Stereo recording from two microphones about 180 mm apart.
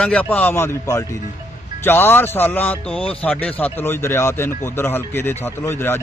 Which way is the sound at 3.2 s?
10° left (ahead or behind).